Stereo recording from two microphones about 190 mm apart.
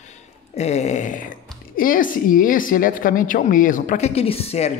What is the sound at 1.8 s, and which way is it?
A woman's voice, 45° left (ahead or behind).